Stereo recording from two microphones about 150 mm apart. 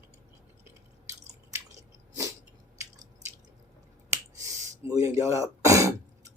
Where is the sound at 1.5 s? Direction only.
20° right (ahead or behind).